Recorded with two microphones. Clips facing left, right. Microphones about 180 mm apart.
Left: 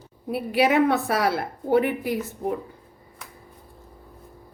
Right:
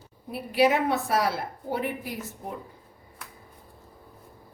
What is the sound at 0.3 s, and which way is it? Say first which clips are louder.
A woman's voice: left 1 dB; 65° left (ahead or behind).